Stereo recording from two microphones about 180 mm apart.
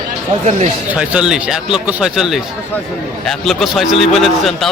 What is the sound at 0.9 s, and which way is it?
A man's voice, 5° right (ahead or behind).